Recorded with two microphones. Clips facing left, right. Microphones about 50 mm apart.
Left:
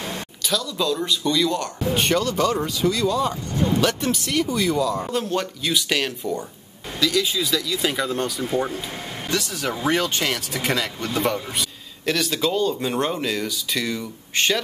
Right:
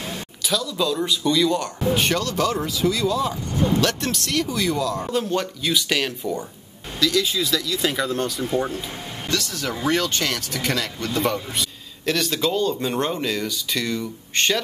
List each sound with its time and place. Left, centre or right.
0.4 s speech: centre
9.3 s speech: centre
11.2 s speech: centre